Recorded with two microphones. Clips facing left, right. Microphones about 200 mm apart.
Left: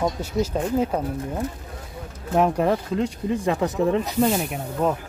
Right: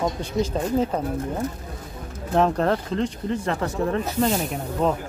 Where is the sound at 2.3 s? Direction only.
10° left (ahead or behind).